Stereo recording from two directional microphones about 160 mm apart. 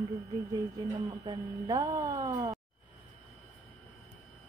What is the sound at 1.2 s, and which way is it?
Speech, 25° right (ahead or behind).